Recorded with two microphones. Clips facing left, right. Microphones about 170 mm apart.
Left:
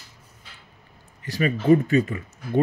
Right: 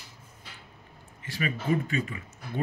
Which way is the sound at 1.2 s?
40° left (ahead or behind).